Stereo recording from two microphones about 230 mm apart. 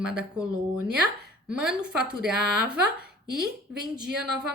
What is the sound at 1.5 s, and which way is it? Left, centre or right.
A woman's voice, centre.